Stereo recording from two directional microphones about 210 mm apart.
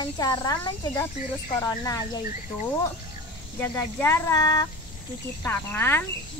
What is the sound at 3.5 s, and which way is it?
Speech, 10° left (ahead or behind).